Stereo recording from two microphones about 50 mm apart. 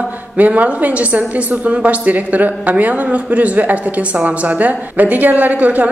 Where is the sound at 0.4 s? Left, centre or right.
Right.